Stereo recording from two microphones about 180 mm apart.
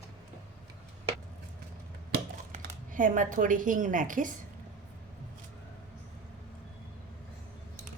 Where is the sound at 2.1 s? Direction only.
50° right (ahead or behind).